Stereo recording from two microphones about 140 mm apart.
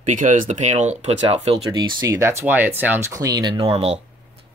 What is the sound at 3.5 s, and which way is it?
Speech, 45° right (ahead or behind).